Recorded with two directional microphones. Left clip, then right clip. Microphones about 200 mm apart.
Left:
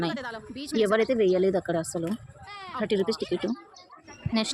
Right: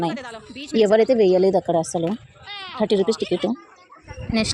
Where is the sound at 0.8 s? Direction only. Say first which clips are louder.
Right 7 dB; 15° right (ahead or behind).